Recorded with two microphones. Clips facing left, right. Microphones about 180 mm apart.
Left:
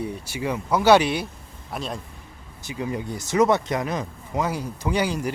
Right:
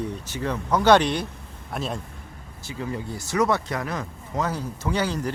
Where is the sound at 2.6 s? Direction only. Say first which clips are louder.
Left 2 dB; 15° left (ahead or behind).